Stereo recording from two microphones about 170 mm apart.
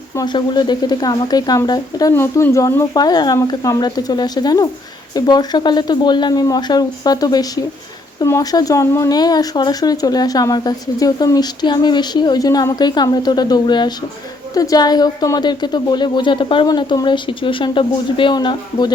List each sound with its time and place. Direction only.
0.2 s speech: 25° left (ahead or behind)